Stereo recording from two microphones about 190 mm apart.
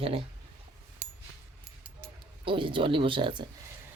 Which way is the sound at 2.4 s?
25° right (ahead or behind).